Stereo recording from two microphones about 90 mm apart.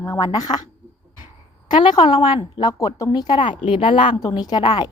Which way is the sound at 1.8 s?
60° left (ahead or behind).